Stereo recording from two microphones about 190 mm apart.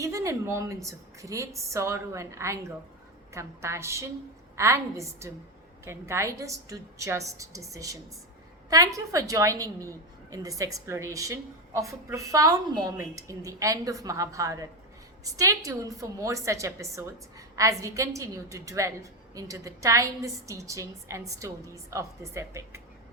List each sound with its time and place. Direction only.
0.0 s a woman's voice: 15° right (ahead or behind)